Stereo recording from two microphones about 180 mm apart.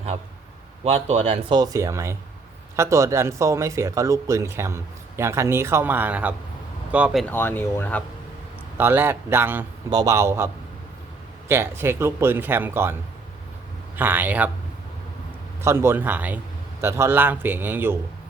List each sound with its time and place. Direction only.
0.9 s speech: 35° right (ahead or behind); by 7.3 s 5° right (ahead or behind)
7.3 s speech: 10° left (ahead or behind)
8.8 s speech: 10° right (ahead or behind)
15.6 s speech: 15° right (ahead or behind)